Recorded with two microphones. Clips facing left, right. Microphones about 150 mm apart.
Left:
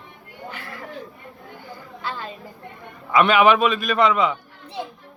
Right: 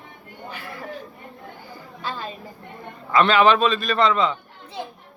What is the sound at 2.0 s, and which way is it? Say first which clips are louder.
Speech: even; 15° right (ahead or behind).